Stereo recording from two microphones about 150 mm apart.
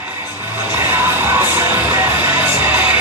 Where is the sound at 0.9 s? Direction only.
15° right (ahead or behind).